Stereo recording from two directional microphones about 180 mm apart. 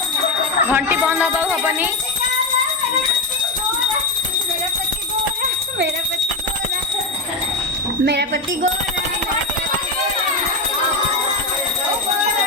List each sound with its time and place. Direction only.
0.7 s speech: 10° right (ahead or behind)
8.0 s speech: 65° right (ahead or behind)